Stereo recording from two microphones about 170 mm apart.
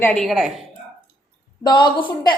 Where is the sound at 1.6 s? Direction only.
25° left (ahead or behind).